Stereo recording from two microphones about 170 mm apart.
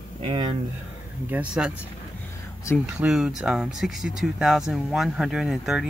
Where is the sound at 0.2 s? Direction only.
30° right (ahead or behind).